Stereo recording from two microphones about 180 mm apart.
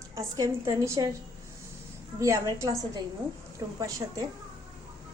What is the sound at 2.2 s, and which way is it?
Speech, 15° right (ahead or behind).